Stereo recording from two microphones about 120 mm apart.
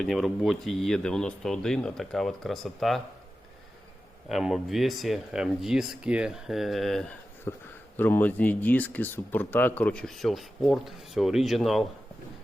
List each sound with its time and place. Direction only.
0.0 s speech: centre (ahead or behind)
4.3 s speech: centre (ahead or behind)
7.5 s a man's voice: 20° left (ahead or behind); by 11.9 s centre (ahead or behind)